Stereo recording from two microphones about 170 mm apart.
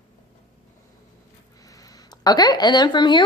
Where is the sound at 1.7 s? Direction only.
20° left (ahead or behind).